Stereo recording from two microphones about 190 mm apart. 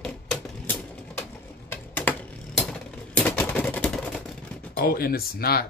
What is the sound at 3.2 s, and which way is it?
Typewriter, 10° left (ahead or behind).